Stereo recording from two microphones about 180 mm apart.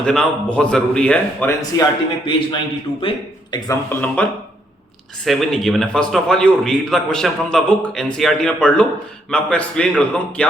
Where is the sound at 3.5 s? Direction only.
20° left (ahead or behind).